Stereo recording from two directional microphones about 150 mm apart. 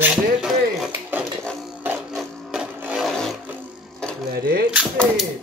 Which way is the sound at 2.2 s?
Centre (ahead or behind).